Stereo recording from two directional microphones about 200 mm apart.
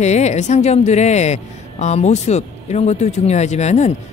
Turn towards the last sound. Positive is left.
turn(degrees=35)  # may be behind; listen again after turning